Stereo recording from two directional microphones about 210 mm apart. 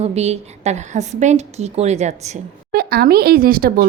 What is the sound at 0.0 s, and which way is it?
Speech, 30° right (ahead or behind).